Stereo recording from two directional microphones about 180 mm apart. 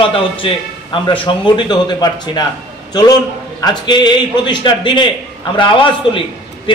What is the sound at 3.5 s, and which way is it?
A man's voice, 20° left (ahead or behind).